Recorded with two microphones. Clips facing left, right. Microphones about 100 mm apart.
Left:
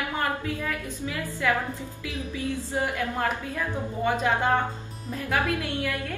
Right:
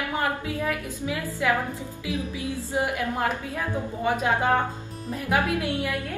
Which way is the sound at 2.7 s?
15° right (ahead or behind).